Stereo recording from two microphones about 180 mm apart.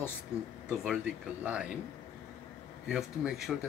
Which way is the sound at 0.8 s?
5° right (ahead or behind).